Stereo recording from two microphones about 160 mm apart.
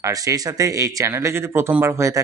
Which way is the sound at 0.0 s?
20° right (ahead or behind).